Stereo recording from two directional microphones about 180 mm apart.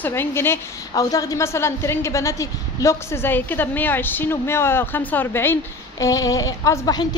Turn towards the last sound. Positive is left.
turn(degrees=20)  # may be behind; listen again after turning